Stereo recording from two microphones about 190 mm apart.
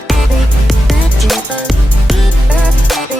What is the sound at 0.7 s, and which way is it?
Music, centre (ahead or behind).